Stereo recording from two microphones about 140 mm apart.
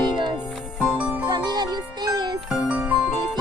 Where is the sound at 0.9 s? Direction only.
10° right (ahead or behind).